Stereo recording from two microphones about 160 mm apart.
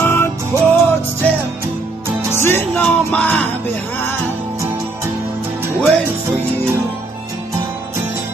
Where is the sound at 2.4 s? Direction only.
10° left (ahead or behind).